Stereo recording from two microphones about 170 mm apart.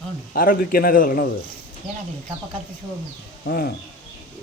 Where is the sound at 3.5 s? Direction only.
60° left (ahead or behind).